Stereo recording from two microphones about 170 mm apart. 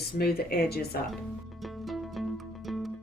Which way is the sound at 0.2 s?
65° left (ahead or behind).